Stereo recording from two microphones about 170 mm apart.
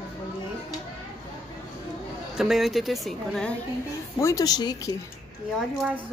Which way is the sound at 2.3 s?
Centre (ahead or behind).